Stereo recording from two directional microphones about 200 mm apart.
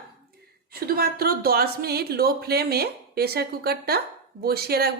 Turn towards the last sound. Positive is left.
turn(degrees=-50)  # may be behind; listen again after turning